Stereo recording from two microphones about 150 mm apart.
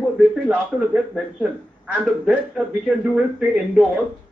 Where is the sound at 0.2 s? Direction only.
5° right (ahead or behind).